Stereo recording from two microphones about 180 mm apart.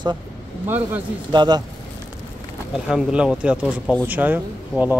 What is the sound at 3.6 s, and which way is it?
Speech, 5° left (ahead or behind).